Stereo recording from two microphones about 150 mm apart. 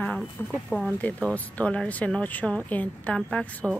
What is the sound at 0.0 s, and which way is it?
Speech, centre (ahead or behind).